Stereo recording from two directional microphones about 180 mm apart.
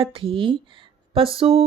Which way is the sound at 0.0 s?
30° right (ahead or behind).